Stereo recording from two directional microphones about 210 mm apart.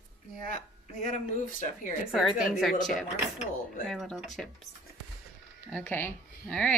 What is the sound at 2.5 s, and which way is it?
Speech, centre (ahead or behind).